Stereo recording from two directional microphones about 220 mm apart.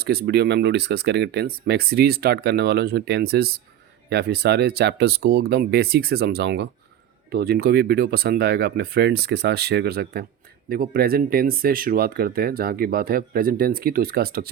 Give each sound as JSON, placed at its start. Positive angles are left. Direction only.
{"t": 0.0, "sound": "speech", "side_deg": -45}